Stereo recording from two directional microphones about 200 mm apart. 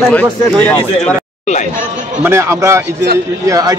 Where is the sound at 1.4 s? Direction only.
35° left (ahead or behind).